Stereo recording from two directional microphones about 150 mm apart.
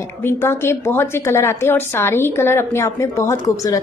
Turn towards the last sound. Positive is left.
turn(degrees=20)  # may be behind; listen again after turning